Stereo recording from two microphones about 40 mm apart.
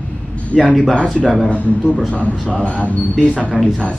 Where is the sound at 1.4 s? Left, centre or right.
Left.